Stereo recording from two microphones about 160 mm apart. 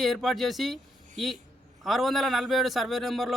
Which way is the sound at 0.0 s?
Centre (ahead or behind).